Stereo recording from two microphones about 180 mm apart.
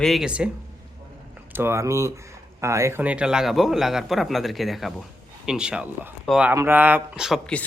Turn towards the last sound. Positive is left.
turn(degrees=5)  # may be behind; listen again after turning